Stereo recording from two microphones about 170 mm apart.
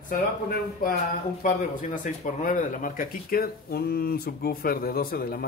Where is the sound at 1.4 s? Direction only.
50° left (ahead or behind).